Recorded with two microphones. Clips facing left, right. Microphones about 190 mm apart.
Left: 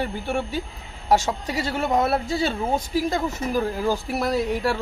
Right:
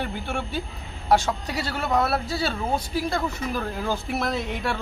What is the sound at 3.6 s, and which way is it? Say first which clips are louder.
Speech: left 7 dB; 10° left (ahead or behind).